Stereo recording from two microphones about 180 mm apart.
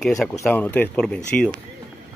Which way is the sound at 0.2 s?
5° left (ahead or behind).